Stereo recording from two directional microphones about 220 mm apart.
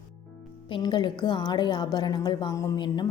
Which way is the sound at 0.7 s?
20° left (ahead or behind).